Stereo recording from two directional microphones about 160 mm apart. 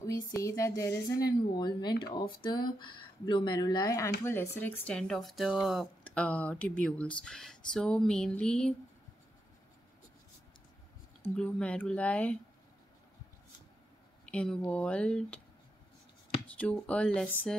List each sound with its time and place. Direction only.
0.4 s speech: 20° left (ahead or behind)
11.2 s speech: 5° left (ahead or behind)
14.2 s speech: 5° left (ahead or behind)
16.4 s speech: 10° left (ahead or behind)